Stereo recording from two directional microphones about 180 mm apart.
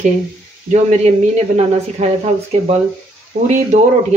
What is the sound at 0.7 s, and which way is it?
A woman's voice, 40° right (ahead or behind).